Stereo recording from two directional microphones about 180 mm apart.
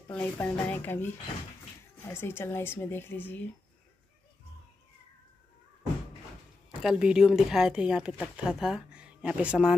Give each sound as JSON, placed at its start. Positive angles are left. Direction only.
{"t": 0.1, "sound": "speech", "side_deg": 10}
{"t": 6.8, "sound": "speech", "side_deg": -5}